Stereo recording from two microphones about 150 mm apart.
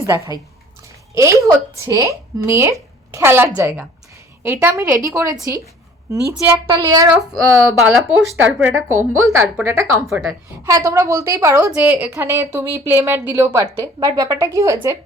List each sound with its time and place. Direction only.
0.0 s a woman's voice: 20° right (ahead or behind)
7.8 s a woman's voice: 5° right (ahead or behind)
10.1 s a woman's voice: 5° right (ahead or behind)
10.7 s a woman's voice: 20° right (ahead or behind)
11.7 s a woman's voice: 10° right (ahead or behind)